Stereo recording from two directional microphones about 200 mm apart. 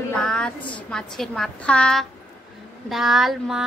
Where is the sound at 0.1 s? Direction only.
5° left (ahead or behind).